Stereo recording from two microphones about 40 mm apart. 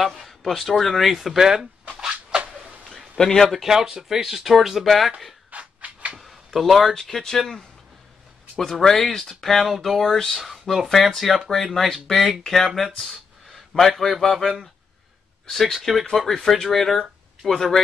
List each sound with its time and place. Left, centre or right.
0.2 s speech: centre
2.0 s a sound: right
3.3 s speech: centre
3.6 s speech: centre
5.5 s rub: right
6.1 s a sound: centre
7.0 s speech: centre